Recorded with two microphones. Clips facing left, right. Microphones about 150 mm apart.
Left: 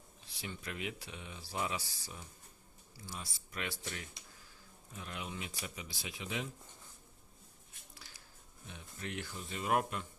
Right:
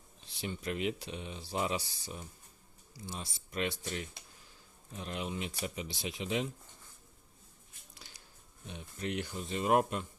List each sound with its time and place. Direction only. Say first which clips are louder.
0.3 s speech: right 7 dB; 25° right (ahead or behind)
8.6 s speech: right 6 dB; 20° right (ahead or behind)